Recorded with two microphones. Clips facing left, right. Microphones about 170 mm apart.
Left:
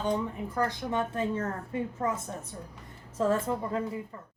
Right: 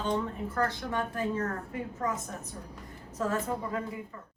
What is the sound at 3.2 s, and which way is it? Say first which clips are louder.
Speech: left 5 dB; 25° left (ahead or behind).